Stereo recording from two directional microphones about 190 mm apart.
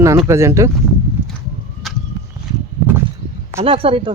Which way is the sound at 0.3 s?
15° right (ahead or behind).